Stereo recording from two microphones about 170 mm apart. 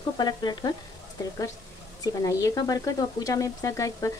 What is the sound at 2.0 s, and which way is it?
Speech, 20° left (ahead or behind).